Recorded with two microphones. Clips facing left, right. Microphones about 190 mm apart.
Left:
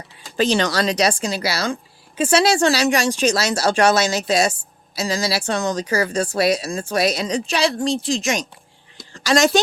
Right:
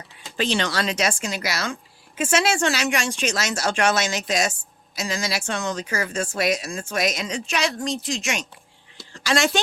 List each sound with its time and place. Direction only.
0.3 s speech: 40° left (ahead or behind)